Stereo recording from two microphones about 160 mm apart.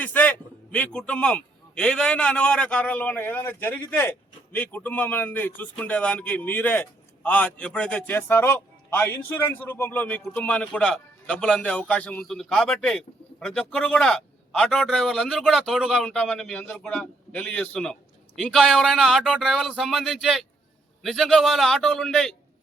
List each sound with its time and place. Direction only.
0.0 s a man's voice: 10° left (ahead or behind)